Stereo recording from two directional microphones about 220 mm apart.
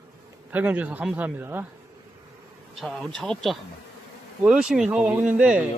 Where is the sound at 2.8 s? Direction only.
Centre (ahead or behind).